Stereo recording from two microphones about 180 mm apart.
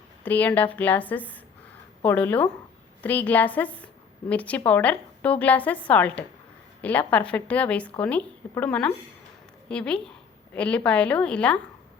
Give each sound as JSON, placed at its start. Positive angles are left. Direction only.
{"t": 0.3, "sound": "a woman's voice", "side_deg": 10}